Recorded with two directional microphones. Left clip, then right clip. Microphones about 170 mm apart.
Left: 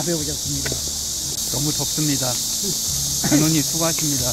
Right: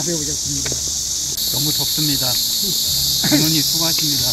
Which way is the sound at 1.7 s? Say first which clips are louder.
Right 4 dB; 5° left (ahead or behind).